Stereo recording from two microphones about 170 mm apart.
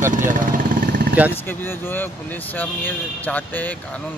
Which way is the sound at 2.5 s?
10° left (ahead or behind).